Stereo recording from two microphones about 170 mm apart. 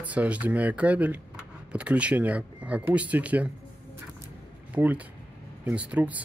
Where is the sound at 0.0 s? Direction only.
10° right (ahead or behind).